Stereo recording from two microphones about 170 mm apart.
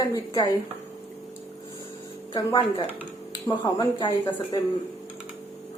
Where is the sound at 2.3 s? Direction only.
30° left (ahead or behind).